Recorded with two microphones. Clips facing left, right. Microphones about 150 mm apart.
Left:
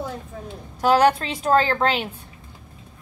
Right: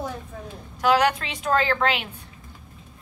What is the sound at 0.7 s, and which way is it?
A woman's voice, 35° left (ahead or behind).